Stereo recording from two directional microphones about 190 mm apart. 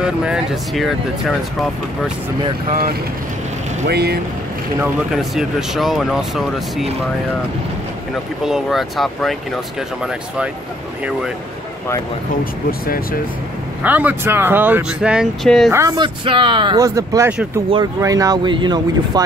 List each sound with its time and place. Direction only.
0.0 s speech: 5° right (ahead or behind)
2.7 s speech: 50° right (ahead or behind)
5.1 s speech: centre (ahead or behind)
8.5 s speech: centre (ahead or behind)
13.8 s speech: 10° right (ahead or behind)
15.7 s speech: 15° right (ahead or behind)